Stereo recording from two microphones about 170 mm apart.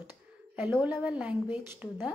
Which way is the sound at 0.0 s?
10° right (ahead or behind).